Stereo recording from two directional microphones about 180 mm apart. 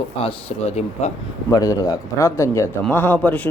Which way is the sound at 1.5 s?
20° left (ahead or behind).